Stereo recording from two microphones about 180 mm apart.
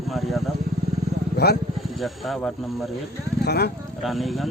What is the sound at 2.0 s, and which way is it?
Speech, centre (ahead or behind).